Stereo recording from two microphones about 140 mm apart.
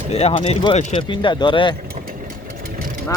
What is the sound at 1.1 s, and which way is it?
Speech, 35° left (ahead or behind).